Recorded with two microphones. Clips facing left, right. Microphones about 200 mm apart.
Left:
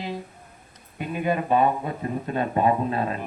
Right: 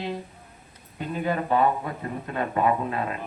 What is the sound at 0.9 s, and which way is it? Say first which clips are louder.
Speech: left 2 dB; 15° left (ahead or behind).